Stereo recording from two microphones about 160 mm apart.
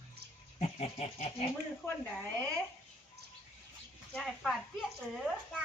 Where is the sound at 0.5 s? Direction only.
40° left (ahead or behind).